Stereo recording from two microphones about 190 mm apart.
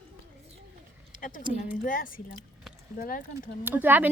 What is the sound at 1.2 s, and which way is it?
A woman's voice, 45° left (ahead or behind).